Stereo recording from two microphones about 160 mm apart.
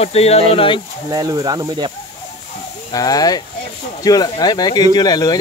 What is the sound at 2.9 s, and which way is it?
Speech, 25° left (ahead or behind).